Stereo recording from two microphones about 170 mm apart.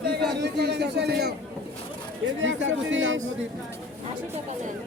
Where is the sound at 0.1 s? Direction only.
85° right.